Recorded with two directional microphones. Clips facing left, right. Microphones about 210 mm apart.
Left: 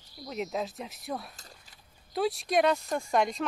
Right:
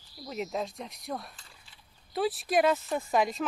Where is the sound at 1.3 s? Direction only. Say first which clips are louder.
Left 4 dB; 40° left (ahead or behind).